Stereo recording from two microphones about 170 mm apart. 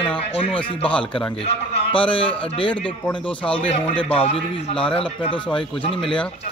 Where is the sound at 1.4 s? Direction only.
30° left (ahead or behind).